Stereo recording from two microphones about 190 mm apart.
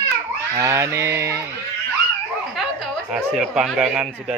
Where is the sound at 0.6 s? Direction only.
15° right (ahead or behind).